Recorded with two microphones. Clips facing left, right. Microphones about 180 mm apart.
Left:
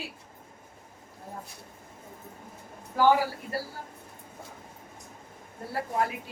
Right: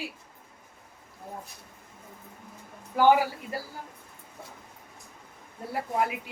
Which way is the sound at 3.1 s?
15° right (ahead or behind).